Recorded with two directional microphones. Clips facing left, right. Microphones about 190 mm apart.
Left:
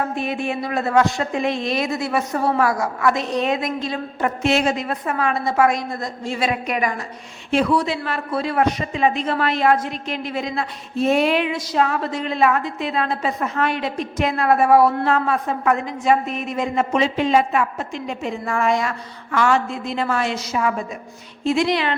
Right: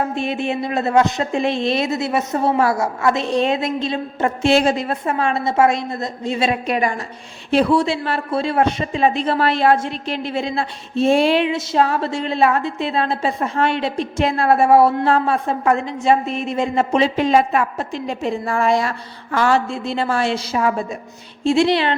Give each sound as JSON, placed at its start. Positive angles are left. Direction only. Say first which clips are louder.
{"t": 0.0, "sound": "speech", "louder": "right 2 dB", "side_deg": -25}